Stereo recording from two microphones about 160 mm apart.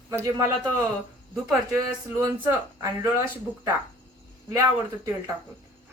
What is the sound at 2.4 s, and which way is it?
Speech, 25° right (ahead or behind).